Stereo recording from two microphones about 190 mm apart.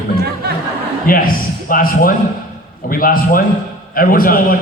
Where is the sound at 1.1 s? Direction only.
50° left (ahead or behind).